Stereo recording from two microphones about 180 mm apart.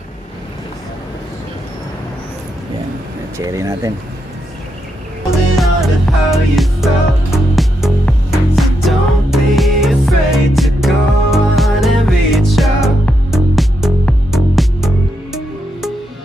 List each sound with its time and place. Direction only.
3.3 s speech: 15° right (ahead or behind)
5.5 s music: centre (ahead or behind)